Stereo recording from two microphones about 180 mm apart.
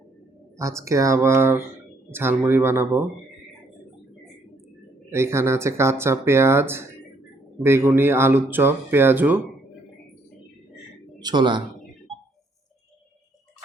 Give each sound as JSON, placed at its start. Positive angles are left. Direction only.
{"t": 0.8, "sound": "speech", "side_deg": -15}
{"t": 5.1, "sound": "speech", "side_deg": -15}
{"t": 11.2, "sound": "a woman's voice", "side_deg": -25}